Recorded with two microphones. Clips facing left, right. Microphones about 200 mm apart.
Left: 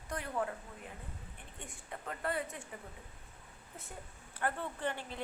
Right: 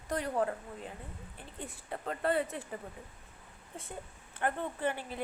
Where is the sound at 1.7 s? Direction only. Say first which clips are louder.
Right 5 dB; 35° right (ahead or behind).